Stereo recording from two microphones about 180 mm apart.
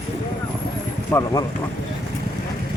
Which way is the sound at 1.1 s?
20° left (ahead or behind).